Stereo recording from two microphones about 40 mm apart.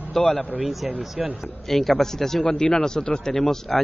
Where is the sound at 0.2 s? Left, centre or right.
Left.